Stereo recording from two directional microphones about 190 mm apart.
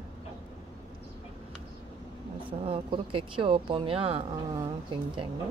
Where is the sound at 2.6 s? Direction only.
30° right (ahead or behind).